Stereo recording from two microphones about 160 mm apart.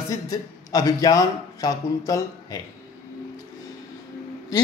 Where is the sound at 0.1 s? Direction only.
20° left (ahead or behind).